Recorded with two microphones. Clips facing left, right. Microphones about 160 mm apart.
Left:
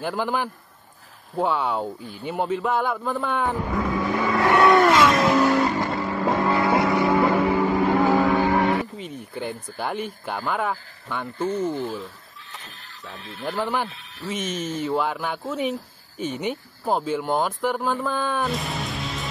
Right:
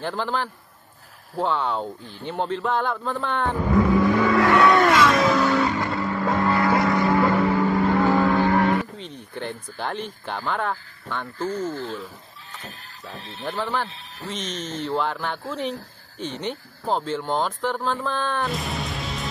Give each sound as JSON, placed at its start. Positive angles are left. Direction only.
{"t": 0.0, "sound": "speech", "side_deg": 10}
{"t": 4.7, "sound": "music", "side_deg": 0}
{"t": 5.9, "sound": "vehicle", "side_deg": 20}
{"t": 8.5, "sound": "speech", "side_deg": 5}
{"t": 11.3, "sound": "speech", "side_deg": 25}
{"t": 12.6, "sound": "speech", "side_deg": -40}
{"t": 13.5, "sound": "speech", "side_deg": 10}